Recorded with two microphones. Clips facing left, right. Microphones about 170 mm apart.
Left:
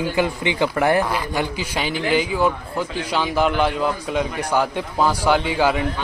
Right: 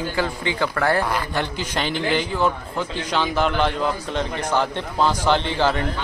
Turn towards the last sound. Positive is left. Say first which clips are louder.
# left 2 dB
turn(degrees=10)  # may be behind; listen again after turning